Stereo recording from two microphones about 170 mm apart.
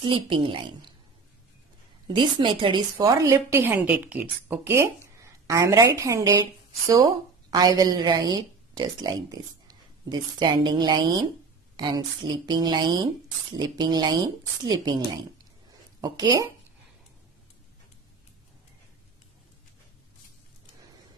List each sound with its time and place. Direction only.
0.0 s speech: 30° right (ahead or behind)
2.1 s a woman's voice: 25° right (ahead or behind)
11.7 s a sound: 25° right (ahead or behind)
12.4 s speech: 25° right (ahead or behind)
16.0 s speech: 20° right (ahead or behind)